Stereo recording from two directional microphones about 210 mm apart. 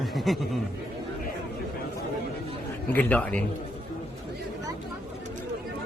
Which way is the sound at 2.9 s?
5° left (ahead or behind).